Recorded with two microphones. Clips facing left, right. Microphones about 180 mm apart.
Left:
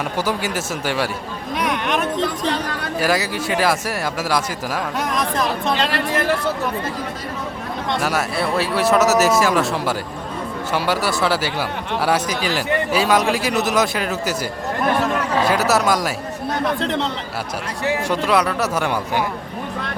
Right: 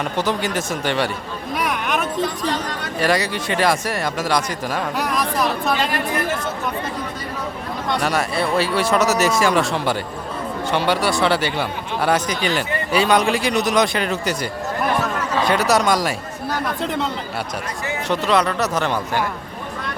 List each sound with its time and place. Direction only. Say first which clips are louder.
0.2 s speech: right 1 dB; 10° left (ahead or behind)
1.5 s a sound: left 1 dB; centre (ahead or behind)
3.0 s speech: right 1 dB; 5° left (ahead or behind)
5.7 s speech: left 1 dB; 70° left (ahead or behind)
7.9 s speech: right 1 dB; centre (ahead or behind)
15.4 s speech: right 1 dB; 5° left (ahead or behind)
18.1 s speech: right 2 dB; 10° left (ahead or behind)